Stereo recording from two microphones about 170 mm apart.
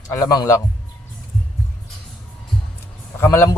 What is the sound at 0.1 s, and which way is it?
Speech, 15° left (ahead or behind).